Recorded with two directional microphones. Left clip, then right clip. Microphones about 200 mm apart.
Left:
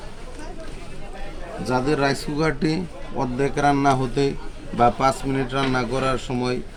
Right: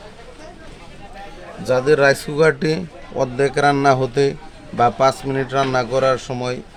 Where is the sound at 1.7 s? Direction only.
55° right (ahead or behind).